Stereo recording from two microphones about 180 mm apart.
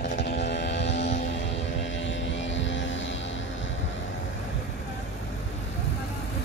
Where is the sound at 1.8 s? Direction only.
90° left.